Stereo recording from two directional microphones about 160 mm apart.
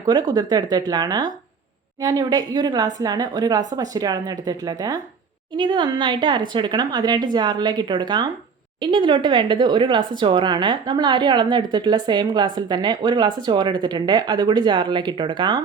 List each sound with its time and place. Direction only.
0.0 s speech: 25° right (ahead or behind)